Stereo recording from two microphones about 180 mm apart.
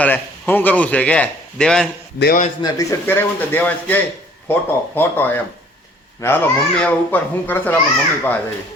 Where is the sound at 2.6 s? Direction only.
20° left (ahead or behind).